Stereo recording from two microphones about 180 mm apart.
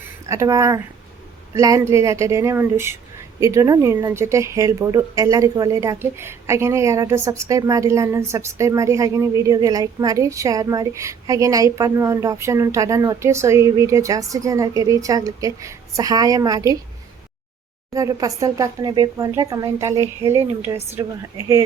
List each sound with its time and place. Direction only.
0.3 s a woman's voice: 15° right (ahead or behind)
17.9 s a woman's voice: 20° right (ahead or behind)